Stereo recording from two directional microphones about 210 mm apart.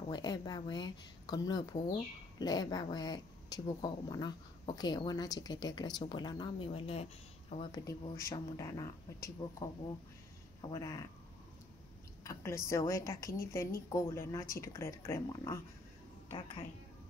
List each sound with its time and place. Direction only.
0.1 s speech: 20° left (ahead or behind)
7.7 s speech: 15° left (ahead or behind)
12.2 s speech: 15° left (ahead or behind)
16.3 s speech: 25° left (ahead or behind)